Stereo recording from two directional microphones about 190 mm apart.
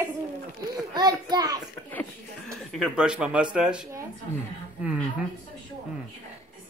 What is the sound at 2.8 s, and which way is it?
Speech, 5° right (ahead or behind).